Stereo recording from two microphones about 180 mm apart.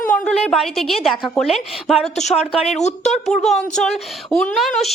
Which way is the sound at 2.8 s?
40° left (ahead or behind).